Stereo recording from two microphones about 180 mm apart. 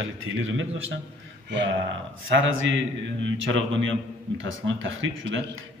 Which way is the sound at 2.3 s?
90° right.